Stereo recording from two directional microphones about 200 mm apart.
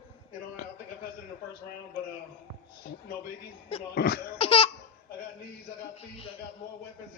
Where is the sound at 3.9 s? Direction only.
55° left (ahead or behind).